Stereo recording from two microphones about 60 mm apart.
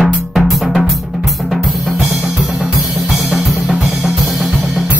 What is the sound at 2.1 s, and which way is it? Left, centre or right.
Drum kit, centre.